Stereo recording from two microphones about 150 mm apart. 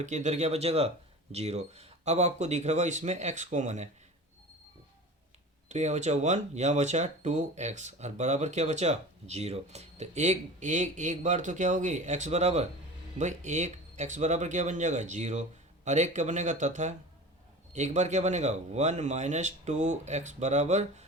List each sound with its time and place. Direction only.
0.0 s speech: 50° right (ahead or behind)
5.6 s speech: 50° right (ahead or behind)